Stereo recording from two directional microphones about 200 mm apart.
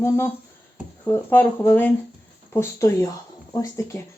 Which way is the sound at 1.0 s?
10° left (ahead or behind).